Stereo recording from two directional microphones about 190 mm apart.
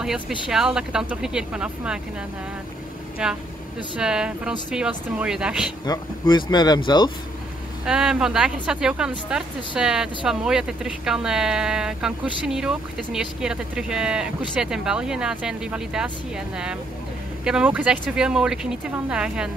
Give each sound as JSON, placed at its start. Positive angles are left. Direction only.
{"t": 0.0, "sound": "speech", "side_deg": -5}
{"t": 3.2, "sound": "speech", "side_deg": -5}
{"t": 5.9, "sound": "speech", "side_deg": 25}
{"t": 7.8, "sound": "speech", "side_deg": -5}